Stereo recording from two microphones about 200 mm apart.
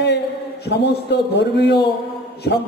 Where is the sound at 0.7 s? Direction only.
55° left (ahead or behind).